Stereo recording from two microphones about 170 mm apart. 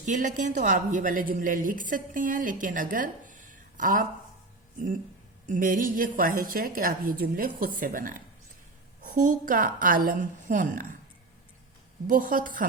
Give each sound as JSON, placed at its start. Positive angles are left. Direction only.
{"t": 0.0, "sound": "a woman's voice", "side_deg": -50}
{"t": 5.5, "sound": "a woman's voice", "side_deg": -55}
{"t": 12.0, "sound": "a woman's voice", "side_deg": -50}